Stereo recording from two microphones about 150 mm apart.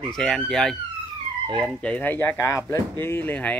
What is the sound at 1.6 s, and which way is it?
Speech, 5° left (ahead or behind).